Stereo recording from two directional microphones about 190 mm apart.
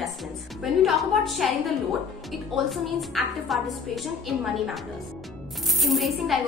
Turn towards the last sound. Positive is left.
turn(degrees=0)  # may be behind; listen again after turning